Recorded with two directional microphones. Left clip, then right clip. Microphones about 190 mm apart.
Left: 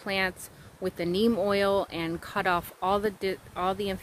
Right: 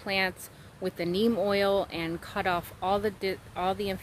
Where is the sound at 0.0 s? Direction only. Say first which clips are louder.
Even; 15° left (ahead or behind).